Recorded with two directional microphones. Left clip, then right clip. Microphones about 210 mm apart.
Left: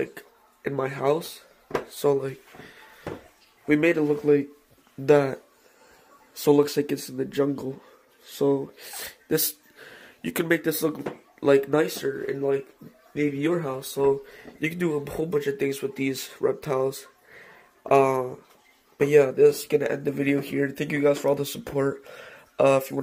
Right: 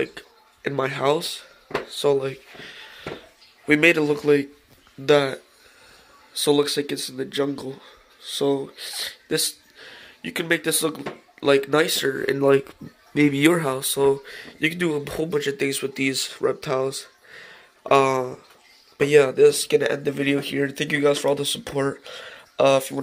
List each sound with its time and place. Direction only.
0.0 s speech: centre (ahead or behind)
1.9 s speech: 15° left (ahead or behind)
5.0 s speech: 20° left (ahead or behind)
11.7 s speech: centre (ahead or behind)
12.4 s speech: 40° right (ahead or behind)
13.6 s speech: 10° right (ahead or behind); by 22.9 s 10° left (ahead or behind)